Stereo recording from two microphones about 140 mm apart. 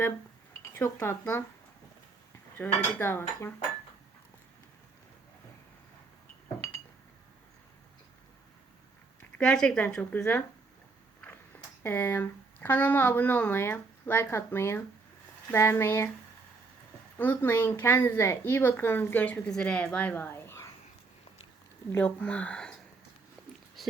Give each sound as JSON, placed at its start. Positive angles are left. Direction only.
{"t": 0.6, "sound": "a sound", "side_deg": 20}
{"t": 1.2, "sound": "a woman's voice", "side_deg": 15}
{"t": 2.6, "sound": "a woman's voice", "side_deg": 15}
{"t": 9.4, "sound": "a woman's voice", "side_deg": 5}
{"t": 11.8, "sound": "a woman's voice", "side_deg": 15}
{"t": 17.2, "sound": "a woman's voice", "side_deg": 15}
{"t": 21.9, "sound": "a woman's voice", "side_deg": 10}
{"t": 23.8, "sound": "a sound", "side_deg": 0}